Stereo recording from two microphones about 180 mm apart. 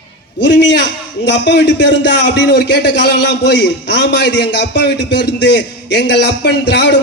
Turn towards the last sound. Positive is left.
turn(degrees=75)  # may be behind; listen again after turning